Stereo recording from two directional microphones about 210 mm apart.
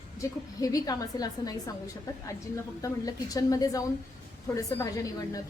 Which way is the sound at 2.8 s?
15° left (ahead or behind).